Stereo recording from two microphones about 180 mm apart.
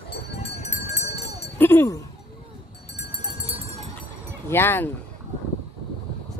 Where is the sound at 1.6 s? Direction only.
10° left (ahead or behind).